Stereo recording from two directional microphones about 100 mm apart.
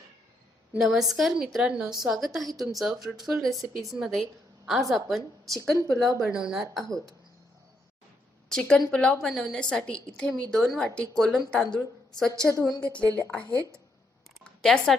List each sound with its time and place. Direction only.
0.8 s a woman's voice: 5° right (ahead or behind)
8.4 s a woman's voice: 5° left (ahead or behind)
9.2 s a woman's voice: centre (ahead or behind)
12.8 s a woman's voice: 15° left (ahead or behind)
14.4 s a sound: 5° left (ahead or behind)